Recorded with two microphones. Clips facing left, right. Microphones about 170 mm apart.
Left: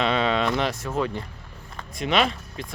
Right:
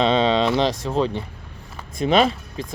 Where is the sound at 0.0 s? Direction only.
25° right (ahead or behind).